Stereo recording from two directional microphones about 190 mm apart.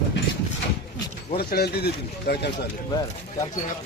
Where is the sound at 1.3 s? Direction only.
55° left (ahead or behind).